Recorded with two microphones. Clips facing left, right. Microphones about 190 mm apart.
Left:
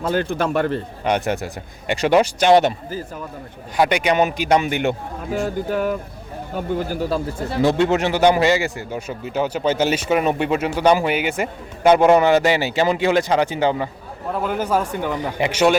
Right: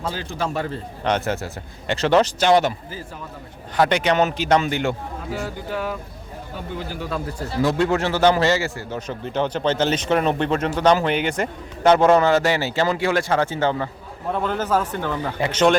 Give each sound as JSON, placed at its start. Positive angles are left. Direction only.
{"t": 0.1, "sound": "speech", "side_deg": 60}
{"t": 1.0, "sound": "a man's voice", "side_deg": 15}
{"t": 3.8, "sound": "a man's voice", "side_deg": 10}
{"t": 5.5, "sound": "speech", "side_deg": 50}
{"t": 7.3, "sound": "a man's voice", "side_deg": 25}